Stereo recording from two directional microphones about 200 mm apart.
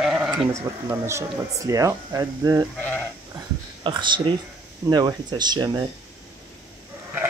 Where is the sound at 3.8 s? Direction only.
25° right (ahead or behind).